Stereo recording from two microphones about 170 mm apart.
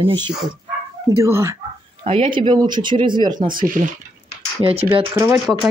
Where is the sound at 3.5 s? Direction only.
55° right (ahead or behind).